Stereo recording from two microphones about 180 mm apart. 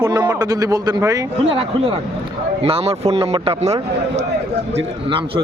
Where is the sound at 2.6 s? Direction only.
35° right (ahead or behind).